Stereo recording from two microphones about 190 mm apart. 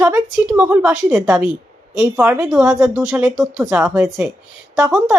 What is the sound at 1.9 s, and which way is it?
Speech, 5° right (ahead or behind).